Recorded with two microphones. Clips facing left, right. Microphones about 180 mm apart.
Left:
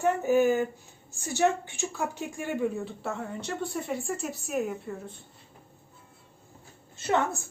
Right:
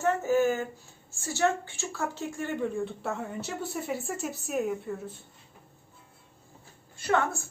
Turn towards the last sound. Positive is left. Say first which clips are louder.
# even
turn(degrees=20)  # may be behind; listen again after turning